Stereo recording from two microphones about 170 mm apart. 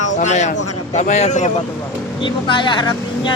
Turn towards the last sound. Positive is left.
turn(degrees=25)  # may be behind; listen again after turning